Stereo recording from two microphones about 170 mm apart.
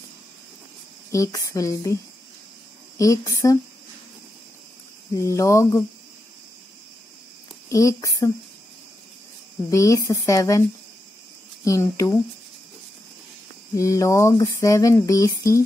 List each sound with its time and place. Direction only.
1.1 s speech: 20° left (ahead or behind)
3.0 s speech: 20° left (ahead or behind)
5.1 s speech: 20° left (ahead or behind)
7.7 s speech: 20° left (ahead or behind)
9.7 s speech: 20° left (ahead or behind)
11.6 s speech: 15° left (ahead or behind)
13.7 s speech: 20° left (ahead or behind)